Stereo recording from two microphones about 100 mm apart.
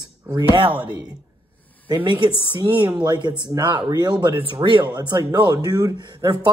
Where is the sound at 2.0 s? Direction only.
50° right (ahead or behind).